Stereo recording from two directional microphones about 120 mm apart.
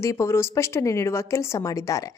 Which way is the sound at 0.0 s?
25° left (ahead or behind).